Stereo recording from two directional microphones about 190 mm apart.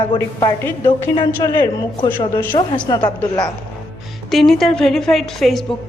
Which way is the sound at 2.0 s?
10° left (ahead or behind).